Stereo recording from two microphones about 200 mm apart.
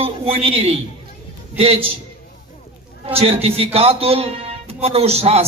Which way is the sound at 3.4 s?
30° right (ahead or behind).